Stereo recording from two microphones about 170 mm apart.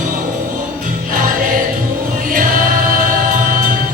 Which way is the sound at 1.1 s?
55° right (ahead or behind).